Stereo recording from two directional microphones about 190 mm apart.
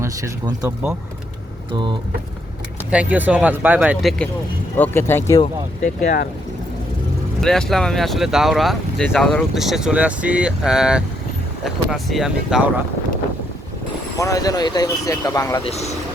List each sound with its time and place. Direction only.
0.0 s speech: 20° right (ahead or behind)
1.7 s speech: 25° right (ahead or behind)
2.9 s speech: 5° right (ahead or behind)
4.8 s speech: 10° left (ahead or behind)
5.8 s speech: 45° left (ahead or behind)
7.4 s speech: centre (ahead or behind)
14.2 s speech: 15° left (ahead or behind)
15.6 s speech: 35° left (ahead or behind)